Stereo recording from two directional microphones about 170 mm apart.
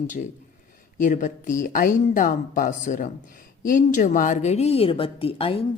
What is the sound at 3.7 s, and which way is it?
A woman's voice, 50° left (ahead or behind).